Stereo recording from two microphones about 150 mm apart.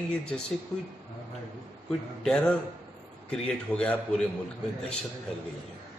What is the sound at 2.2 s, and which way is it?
Speech, 5° left (ahead or behind).